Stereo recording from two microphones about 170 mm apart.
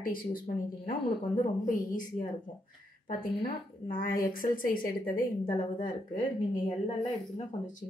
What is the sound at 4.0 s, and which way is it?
Speech, 55° left (ahead or behind).